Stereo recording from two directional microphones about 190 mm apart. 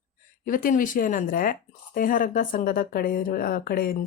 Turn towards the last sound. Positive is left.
turn(degrees=50)  # may be behind; listen again after turning